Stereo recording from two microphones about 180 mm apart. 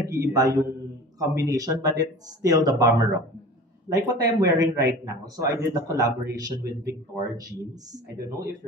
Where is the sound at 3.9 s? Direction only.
20° right (ahead or behind).